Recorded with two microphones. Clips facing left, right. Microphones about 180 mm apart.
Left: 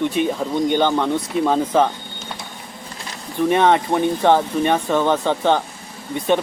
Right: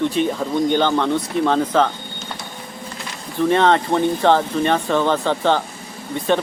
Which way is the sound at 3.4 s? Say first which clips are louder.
Even; 15° left (ahead or behind).